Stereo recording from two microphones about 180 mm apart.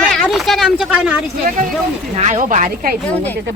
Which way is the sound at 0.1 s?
Centre (ahead or behind).